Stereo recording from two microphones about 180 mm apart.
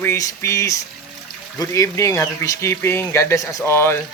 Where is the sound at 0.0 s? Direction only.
15° left (ahead or behind).